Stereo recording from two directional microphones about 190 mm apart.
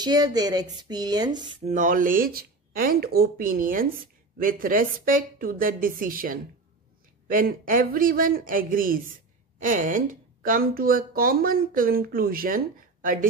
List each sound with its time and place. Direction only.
0.0 s speech: 20° right (ahead or behind)
1.5 s speech: 35° right (ahead or behind)